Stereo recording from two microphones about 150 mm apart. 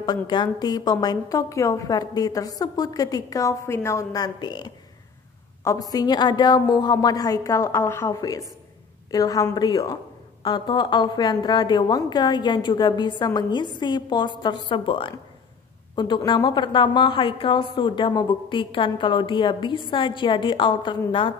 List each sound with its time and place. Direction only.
0.0 s a woman's voice: 30° left (ahead or behind)
16.3 s a woman's voice: 30° left (ahead or behind)